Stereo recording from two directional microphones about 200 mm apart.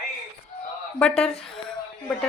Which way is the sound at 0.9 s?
Centre (ahead or behind).